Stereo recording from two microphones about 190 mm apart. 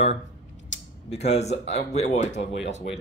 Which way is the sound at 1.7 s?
35° left (ahead or behind).